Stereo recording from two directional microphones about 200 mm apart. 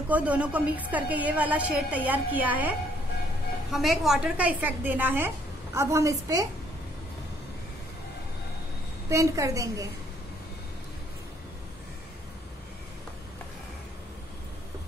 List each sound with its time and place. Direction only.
0.1 s a woman's voice: 5° right (ahead or behind)
3.7 s a woman's voice: centre (ahead or behind); by 6.4 s 15° right (ahead or behind)
9.1 s a woman's voice: 15° right (ahead or behind)